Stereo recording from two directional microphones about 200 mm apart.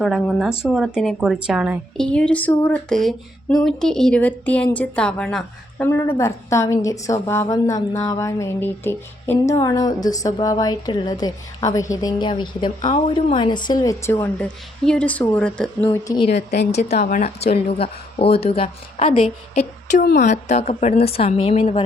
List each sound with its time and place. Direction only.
0.0 s speech: centre (ahead or behind)
2.0 s a woman's voice: 5° left (ahead or behind)
16.3 s speech: 55° left (ahead or behind)
16.7 s a woman's voice: 35° left (ahead or behind)
20.0 s speech: 55° left (ahead or behind)
20.2 s a woman's voice: 35° left (ahead or behind)